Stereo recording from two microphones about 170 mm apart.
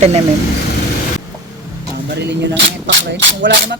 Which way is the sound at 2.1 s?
85° right.